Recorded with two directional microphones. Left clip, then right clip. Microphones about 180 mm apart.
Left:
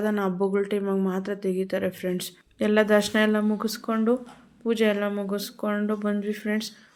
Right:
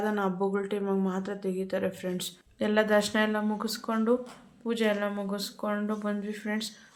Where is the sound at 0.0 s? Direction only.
20° left (ahead or behind).